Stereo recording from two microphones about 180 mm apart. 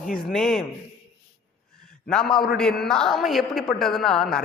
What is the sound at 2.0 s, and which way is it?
A man's voice, 5° left (ahead or behind).